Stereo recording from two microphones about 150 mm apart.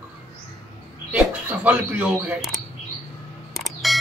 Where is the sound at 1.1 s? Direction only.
10° right (ahead or behind).